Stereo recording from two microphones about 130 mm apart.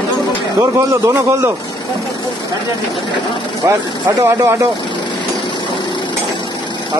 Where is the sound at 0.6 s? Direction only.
25° right (ahead or behind).